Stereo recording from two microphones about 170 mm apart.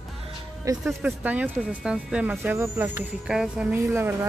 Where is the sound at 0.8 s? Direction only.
5° right (ahead or behind).